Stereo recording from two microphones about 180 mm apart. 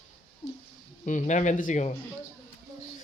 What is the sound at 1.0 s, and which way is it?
Speech, 45° left (ahead or behind).